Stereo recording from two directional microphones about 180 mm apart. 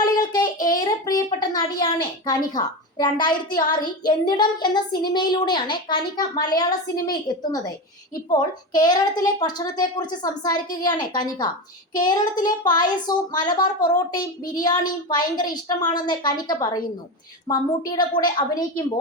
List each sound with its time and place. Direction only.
0.0 s child singing: 20° left (ahead or behind)
0.9 s a sound: 20° left (ahead or behind)
2.2 s speech: 20° left (ahead or behind)